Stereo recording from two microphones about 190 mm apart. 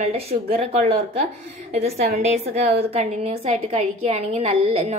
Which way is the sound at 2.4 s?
55° right (ahead or behind).